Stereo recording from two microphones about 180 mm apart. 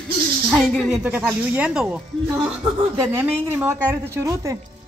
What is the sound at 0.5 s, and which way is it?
A woman's voice, 5° right (ahead or behind).